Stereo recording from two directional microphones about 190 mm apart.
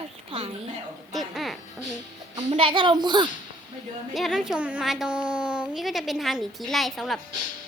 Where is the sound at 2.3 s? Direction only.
25° right (ahead or behind).